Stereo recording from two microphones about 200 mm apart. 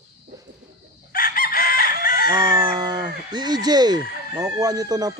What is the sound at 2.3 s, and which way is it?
Chicken, 20° right (ahead or behind).